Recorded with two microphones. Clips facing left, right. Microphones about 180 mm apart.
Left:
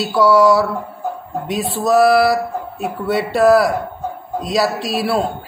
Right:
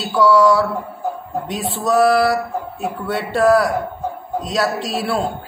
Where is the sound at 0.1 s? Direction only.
10° left (ahead or behind).